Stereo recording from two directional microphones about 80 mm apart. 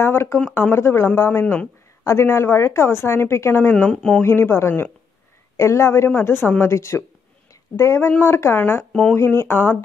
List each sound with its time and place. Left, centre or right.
0.0 s a woman's voice: left
1.4 s speech: left
2.0 s a woman's voice: left
3.7 s speech: centre
4.2 s a woman's voice: left